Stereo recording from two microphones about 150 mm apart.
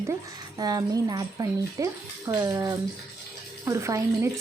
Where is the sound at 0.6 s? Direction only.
25° right (ahead or behind).